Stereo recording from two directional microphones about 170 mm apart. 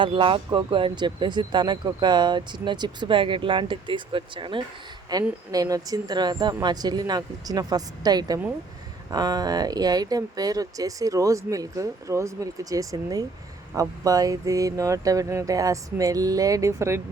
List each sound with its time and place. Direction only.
0.0 s speech: 30° right (ahead or behind)